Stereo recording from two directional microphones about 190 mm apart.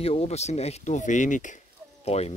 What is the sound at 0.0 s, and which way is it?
Speech, 30° left (ahead or behind).